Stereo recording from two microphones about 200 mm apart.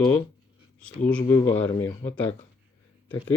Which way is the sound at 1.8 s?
10° left (ahead or behind).